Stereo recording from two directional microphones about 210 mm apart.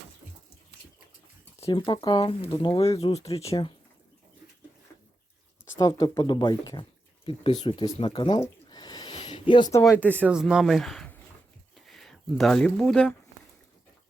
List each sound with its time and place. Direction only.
1.6 s speech: 20° left (ahead or behind)
3.4 s speech: 15° left (ahead or behind)
5.7 s speech: 20° left (ahead or behind)
8.4 s a sound: 20° left (ahead or behind)
9.8 s speech: 10° right (ahead or behind)